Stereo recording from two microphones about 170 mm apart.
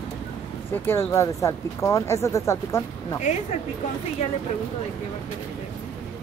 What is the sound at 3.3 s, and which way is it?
Speech, 45° left (ahead or behind).